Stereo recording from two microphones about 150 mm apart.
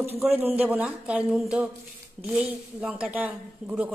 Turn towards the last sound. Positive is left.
turn(degrees=-10)  # may be behind; listen again after turning